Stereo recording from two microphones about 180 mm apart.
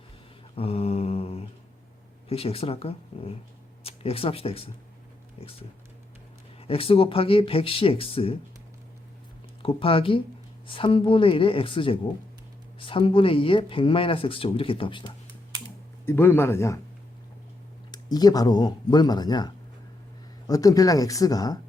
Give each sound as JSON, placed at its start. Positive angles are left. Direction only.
{"t": 0.5, "sound": "mantra", "side_deg": 35}
{"t": 2.3, "sound": "speech", "side_deg": 35}
{"t": 6.6, "sound": "speech", "side_deg": 30}
{"t": 9.6, "sound": "speech", "side_deg": 30}
{"t": 16.0, "sound": "speech", "side_deg": 10}
{"t": 17.9, "sound": "speech", "side_deg": 20}
{"t": 20.5, "sound": "speech", "side_deg": 20}